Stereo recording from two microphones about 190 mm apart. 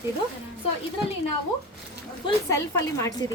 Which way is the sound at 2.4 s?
15° left (ahead or behind).